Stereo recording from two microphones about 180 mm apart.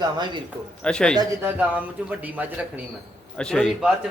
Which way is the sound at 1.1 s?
15° right (ahead or behind).